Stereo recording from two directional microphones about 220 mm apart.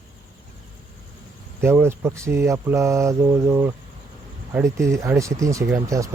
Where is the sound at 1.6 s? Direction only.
10° right (ahead or behind).